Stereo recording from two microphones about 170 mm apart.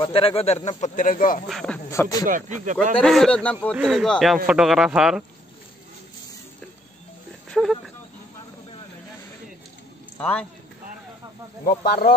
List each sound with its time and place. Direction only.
0.0 s speech: 35° left (ahead or behind); by 1.4 s 55° left (ahead or behind)
1.5 s speech: 5° left (ahead or behind)
1.9 s speech: 20° left (ahead or behind)
2.2 s speech: 50° right (ahead or behind)
3.0 s speech: 5° left (ahead or behind)
7.4 s a sound: 5° left (ahead or behind)
10.1 s a man's voice: 10° left (ahead or behind)
11.6 s speech: 65° left (ahead or behind)